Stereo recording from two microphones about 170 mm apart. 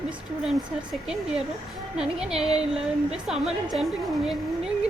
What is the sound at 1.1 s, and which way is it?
A woman's voice, 5° right (ahead or behind).